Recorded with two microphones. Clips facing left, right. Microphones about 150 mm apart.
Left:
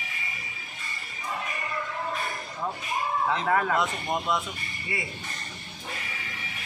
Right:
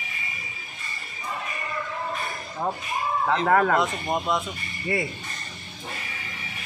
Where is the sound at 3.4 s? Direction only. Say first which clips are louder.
Right 7 dB; 55° right (ahead or behind).